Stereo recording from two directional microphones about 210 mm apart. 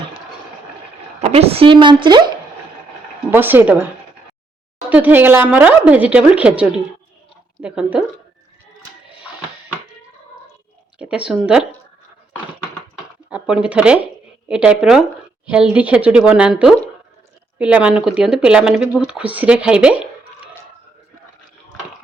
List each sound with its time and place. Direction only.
1.2 s a woman's voice: 30° right (ahead or behind)
3.2 s speech: 10° right (ahead or behind)
4.9 s speech: 10° right (ahead or behind)
10.9 s speech: 5° right (ahead or behind)
13.3 s speech: 5° right (ahead or behind)